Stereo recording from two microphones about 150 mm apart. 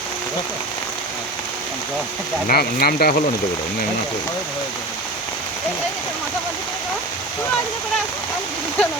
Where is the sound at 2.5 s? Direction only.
85° left.